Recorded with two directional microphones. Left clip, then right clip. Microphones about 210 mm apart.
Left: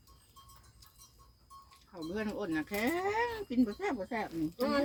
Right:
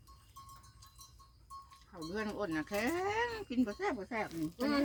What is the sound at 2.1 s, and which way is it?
Speech, 15° right (ahead or behind).